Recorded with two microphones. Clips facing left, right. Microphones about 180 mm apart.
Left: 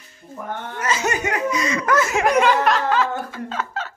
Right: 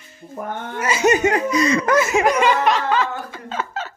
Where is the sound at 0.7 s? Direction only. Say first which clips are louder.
Right 6 dB; 10° right (ahead or behind); by 1.9 s 35° right (ahead or behind).